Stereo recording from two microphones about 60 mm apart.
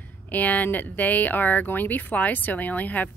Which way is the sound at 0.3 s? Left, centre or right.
Left.